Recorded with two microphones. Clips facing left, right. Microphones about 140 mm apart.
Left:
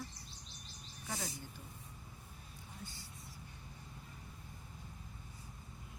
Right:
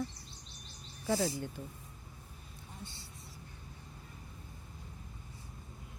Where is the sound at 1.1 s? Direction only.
35° right (ahead or behind).